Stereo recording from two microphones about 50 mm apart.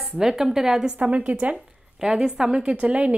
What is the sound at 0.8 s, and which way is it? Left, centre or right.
A woman's voice, right.